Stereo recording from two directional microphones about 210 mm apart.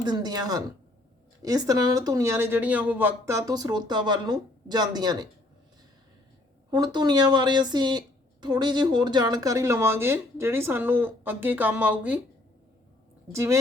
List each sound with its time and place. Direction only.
0.0 s a sound: 20° right (ahead or behind)
1.4 s speech: 15° right (ahead or behind)
6.7 s speech: 20° right (ahead or behind)
13.3 s speech: 15° right (ahead or behind)